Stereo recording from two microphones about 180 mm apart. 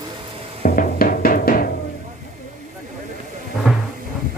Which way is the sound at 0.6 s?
50° left (ahead or behind).